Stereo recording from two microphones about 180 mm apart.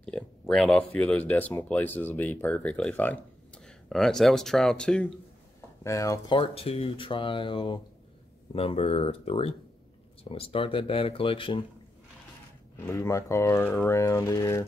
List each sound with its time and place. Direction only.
0.0 s speech: 5° left (ahead or behind)
5.9 s speech: 20° left (ahead or behind)
12.7 s speech: 15° left (ahead or behind)